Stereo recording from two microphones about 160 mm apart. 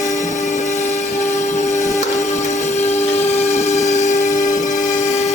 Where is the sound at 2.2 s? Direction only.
45° left (ahead or behind).